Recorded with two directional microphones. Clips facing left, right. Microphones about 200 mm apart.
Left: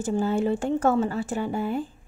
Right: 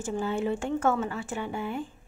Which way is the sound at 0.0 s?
40° left (ahead or behind).